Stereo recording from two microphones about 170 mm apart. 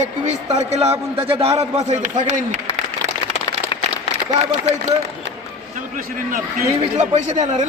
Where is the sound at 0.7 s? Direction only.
35° right (ahead or behind).